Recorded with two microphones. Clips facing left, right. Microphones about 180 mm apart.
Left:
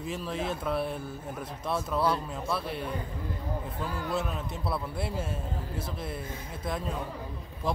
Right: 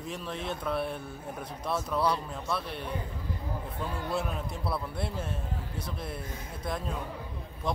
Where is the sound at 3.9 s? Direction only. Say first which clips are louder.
Even; 25° right (ahead or behind).